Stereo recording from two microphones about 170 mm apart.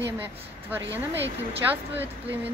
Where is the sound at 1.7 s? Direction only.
10° right (ahead or behind).